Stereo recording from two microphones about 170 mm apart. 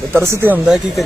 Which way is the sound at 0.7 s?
Centre (ahead or behind).